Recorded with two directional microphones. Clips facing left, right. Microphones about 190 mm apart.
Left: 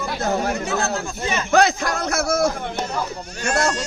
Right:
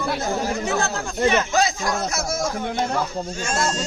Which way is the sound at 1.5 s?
60° left (ahead or behind).